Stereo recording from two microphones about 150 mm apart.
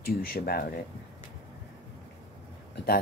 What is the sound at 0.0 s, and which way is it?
Speech, 90° left.